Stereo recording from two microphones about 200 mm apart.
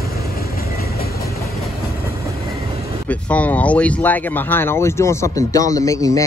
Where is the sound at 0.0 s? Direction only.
50° left (ahead or behind).